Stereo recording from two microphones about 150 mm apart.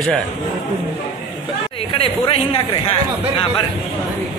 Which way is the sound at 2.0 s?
40° left (ahead or behind).